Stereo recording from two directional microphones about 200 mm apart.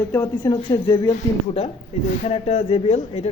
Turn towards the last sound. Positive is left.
turn(degrees=30)  # may be behind; listen again after turning